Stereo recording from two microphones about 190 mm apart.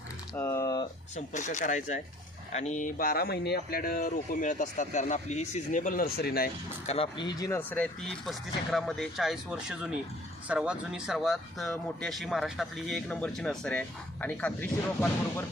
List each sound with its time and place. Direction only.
0.3 s typing: 15° left (ahead or behind)
1.1 s speech: 40° left (ahead or behind)
6.8 s speech: 30° left (ahead or behind); by 15.4 s 10° left (ahead or behind)